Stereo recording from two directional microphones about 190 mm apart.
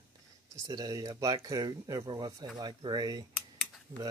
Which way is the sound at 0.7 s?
20° right (ahead or behind).